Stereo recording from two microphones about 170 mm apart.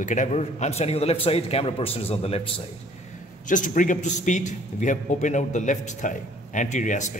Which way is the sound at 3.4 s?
50° left (ahead or behind).